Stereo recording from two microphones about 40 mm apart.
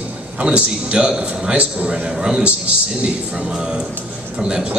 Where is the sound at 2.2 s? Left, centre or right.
Right.